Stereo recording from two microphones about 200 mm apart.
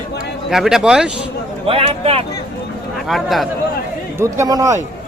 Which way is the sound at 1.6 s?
30° right (ahead or behind).